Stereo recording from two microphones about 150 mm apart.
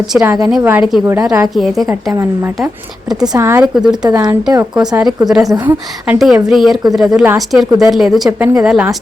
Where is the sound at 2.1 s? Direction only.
15° right (ahead or behind).